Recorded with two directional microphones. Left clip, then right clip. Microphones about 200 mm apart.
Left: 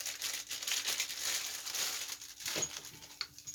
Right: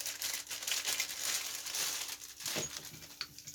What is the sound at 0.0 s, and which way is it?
Crumpling, 10° left (ahead or behind).